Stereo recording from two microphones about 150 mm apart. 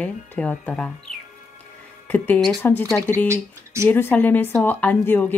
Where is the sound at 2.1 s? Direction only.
10° left (ahead or behind).